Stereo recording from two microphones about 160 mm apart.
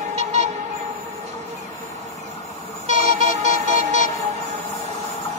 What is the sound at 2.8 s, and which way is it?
Train, 45° right (ahead or behind).